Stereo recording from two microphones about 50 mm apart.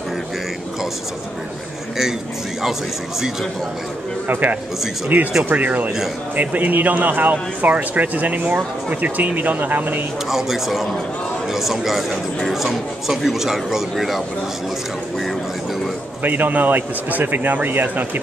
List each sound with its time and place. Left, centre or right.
4.3 s a man's voice: right
10.3 s a man's voice: centre
16.2 s a man's voice: right